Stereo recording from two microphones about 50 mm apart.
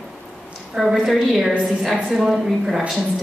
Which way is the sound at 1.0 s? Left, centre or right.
Centre.